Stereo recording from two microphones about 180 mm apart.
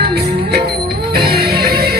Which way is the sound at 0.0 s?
60° right (ahead or behind).